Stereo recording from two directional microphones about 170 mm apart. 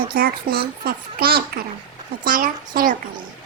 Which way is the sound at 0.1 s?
60° right (ahead or behind).